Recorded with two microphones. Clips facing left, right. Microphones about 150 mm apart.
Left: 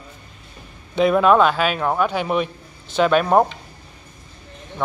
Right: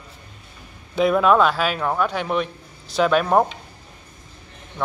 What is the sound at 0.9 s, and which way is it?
Speech, centre (ahead or behind).